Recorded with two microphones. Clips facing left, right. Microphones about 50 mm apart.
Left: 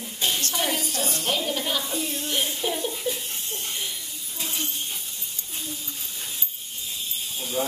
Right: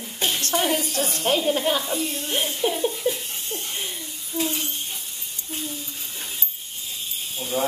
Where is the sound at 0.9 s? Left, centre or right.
Right.